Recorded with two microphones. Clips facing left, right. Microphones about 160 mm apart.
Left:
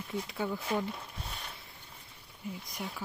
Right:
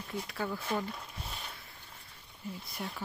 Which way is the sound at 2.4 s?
10° left (ahead or behind).